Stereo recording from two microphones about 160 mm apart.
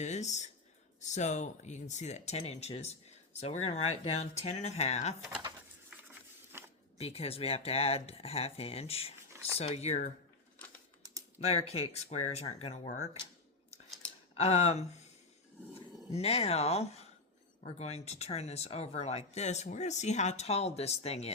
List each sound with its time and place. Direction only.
0.0 s speech: 45° left (ahead or behind)
6.5 s a sound: 15° right (ahead or behind)
7.0 s speech: 40° left (ahead or behind)
11.3 s speech: 40° left (ahead or behind)
14.3 s speech: 40° left (ahead or behind)
16.1 s speech: 40° left (ahead or behind)